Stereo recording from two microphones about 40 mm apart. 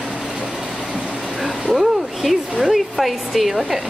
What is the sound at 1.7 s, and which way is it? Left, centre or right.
Speech, centre.